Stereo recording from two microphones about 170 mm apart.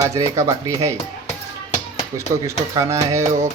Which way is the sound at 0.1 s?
15° right (ahead or behind).